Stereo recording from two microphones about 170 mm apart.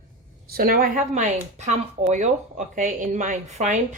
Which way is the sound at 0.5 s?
60° right (ahead or behind).